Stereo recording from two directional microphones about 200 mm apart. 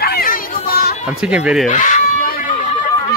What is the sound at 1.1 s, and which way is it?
Speech, 5° right (ahead or behind).